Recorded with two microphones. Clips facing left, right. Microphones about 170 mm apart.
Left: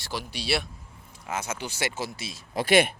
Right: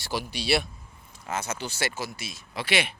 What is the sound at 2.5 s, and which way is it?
Speech, 45° left (ahead or behind).